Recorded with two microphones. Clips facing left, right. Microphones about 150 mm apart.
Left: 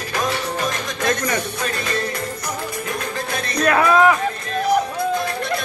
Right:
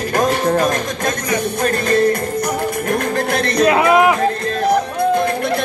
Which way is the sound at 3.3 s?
75° right (ahead or behind).